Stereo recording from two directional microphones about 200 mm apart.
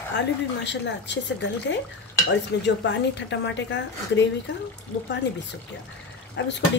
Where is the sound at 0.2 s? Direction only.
60° left (ahead or behind).